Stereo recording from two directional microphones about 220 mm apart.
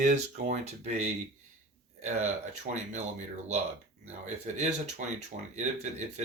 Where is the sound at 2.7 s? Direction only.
35° right (ahead or behind).